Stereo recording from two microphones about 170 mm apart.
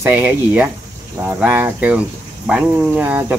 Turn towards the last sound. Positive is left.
turn(degrees=-10)  # may be behind; listen again after turning